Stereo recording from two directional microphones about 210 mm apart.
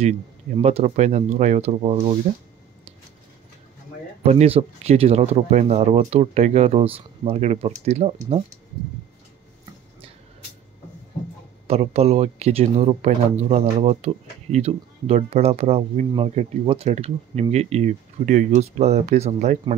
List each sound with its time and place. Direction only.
0.6 s speech: 30° right (ahead or behind)
4.2 s speech: 30° right (ahead or behind)
11.6 s speech: 30° right (ahead or behind)